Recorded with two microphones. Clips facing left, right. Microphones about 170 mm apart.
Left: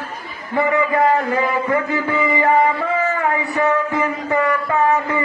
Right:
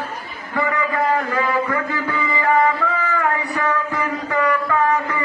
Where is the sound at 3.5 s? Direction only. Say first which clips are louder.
Left 4 dB; 20° left (ahead or behind).